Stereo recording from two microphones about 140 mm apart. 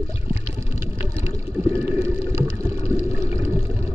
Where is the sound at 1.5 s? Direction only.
15° right (ahead or behind).